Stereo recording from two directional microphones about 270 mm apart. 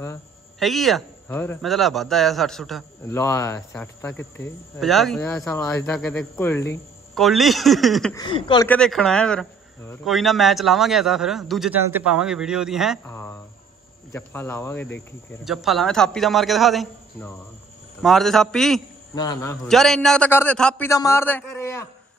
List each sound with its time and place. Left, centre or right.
0.0 s speech: centre
8.1 s a man's voice: centre
8.6 s speech: centre
13.0 s a sound: centre
14.1 s a man's voice: centre
19.1 s a man's voice: centre